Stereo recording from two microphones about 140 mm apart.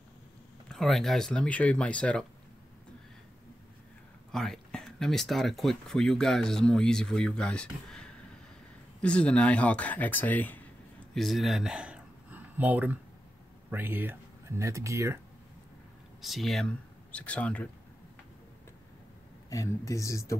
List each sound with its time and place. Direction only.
0.7 s speech: centre (ahead or behind)
4.3 s speech: 5° left (ahead or behind)
11.1 s speech: centre (ahead or behind); by 15.1 s 20° right (ahead or behind)
16.2 s speech: centre (ahead or behind)
19.5 s speech: 25° left (ahead or behind)